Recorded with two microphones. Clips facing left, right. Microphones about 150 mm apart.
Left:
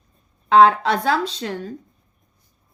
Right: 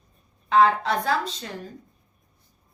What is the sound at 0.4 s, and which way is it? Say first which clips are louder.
Speech: left 5 dB; 90° left.